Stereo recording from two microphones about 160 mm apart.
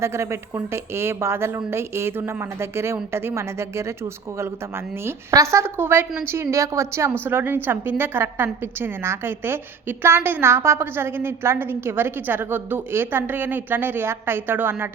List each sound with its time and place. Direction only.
0.0 s a woman's voice: 15° right (ahead or behind)
5.0 s a woman's voice: 20° right (ahead or behind)